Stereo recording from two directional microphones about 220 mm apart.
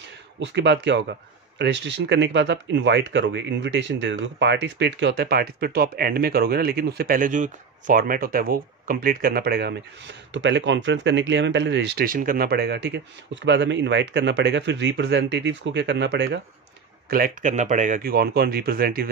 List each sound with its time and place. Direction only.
0.4 s speech: 50° right (ahead or behind)
17.1 s speech: 40° right (ahead or behind)